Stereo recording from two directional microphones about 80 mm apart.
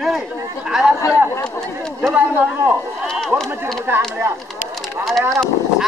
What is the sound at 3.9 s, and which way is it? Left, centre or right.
Speech, right.